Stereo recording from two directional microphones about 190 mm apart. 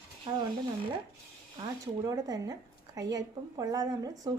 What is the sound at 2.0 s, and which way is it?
A woman's voice, 20° right (ahead or behind).